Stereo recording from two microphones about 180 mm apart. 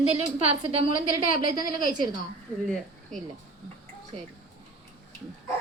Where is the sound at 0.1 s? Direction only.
35° right (ahead or behind).